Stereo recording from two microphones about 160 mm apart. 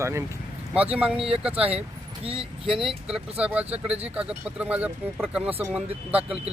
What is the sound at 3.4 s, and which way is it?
Speech, 10° right (ahead or behind).